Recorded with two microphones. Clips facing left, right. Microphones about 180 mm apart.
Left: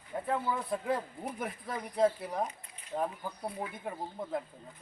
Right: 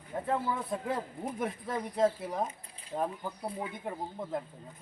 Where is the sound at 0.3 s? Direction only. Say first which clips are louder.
Even; centre (ahead or behind).